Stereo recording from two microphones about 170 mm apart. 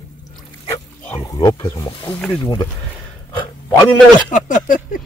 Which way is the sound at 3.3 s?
25° left (ahead or behind).